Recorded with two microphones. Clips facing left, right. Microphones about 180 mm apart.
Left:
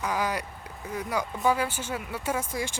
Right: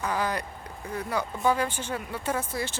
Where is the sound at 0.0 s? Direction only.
10° left (ahead or behind).